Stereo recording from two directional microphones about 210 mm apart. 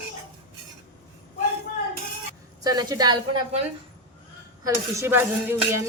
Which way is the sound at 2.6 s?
20° right (ahead or behind).